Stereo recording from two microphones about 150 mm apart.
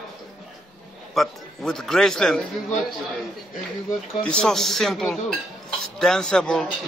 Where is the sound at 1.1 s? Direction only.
Centre (ahead or behind).